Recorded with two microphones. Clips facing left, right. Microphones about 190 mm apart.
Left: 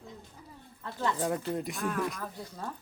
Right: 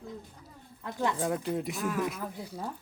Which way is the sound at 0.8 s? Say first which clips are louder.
Right 1 dB; 15° right (ahead or behind).